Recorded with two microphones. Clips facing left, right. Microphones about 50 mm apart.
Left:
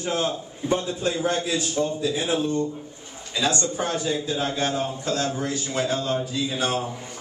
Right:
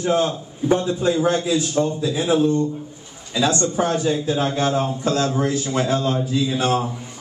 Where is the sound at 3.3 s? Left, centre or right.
Right.